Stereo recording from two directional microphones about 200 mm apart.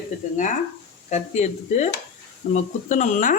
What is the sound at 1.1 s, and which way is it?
Speech, 35° left (ahead or behind).